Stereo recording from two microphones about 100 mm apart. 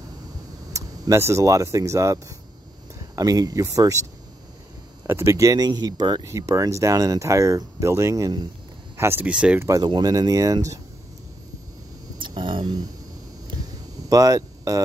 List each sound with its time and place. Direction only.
0.7 s speech: 30° right (ahead or behind)
5.0 s speech: 25° right (ahead or behind); by 6.2 s 40° right (ahead or behind)
6.2 s speech: 30° right (ahead or behind)
8.9 s speech: 25° right (ahead or behind)
9.3 s speech: 10° right (ahead or behind)
9.6 s speech: 35° right (ahead or behind)
12.2 s speech: 55° right (ahead or behind)
14.0 s speech: 35° right (ahead or behind)